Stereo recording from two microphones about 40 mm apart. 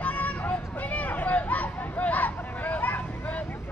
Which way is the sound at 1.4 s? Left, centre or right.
Left.